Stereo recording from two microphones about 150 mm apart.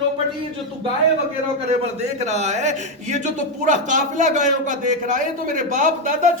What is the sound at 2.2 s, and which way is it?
Speech, 50° right (ahead or behind).